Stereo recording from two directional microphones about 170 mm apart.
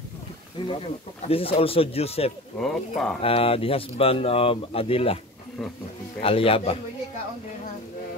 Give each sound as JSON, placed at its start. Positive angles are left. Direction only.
{"t": 0.6, "sound": "speech", "side_deg": 25}
{"t": 2.6, "sound": "speech", "side_deg": 0}
{"t": 3.2, "sound": "speech", "side_deg": 35}
{"t": 6.2, "sound": "speech", "side_deg": 35}